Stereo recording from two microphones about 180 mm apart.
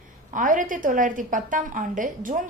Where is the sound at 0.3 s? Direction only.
45° right (ahead or behind).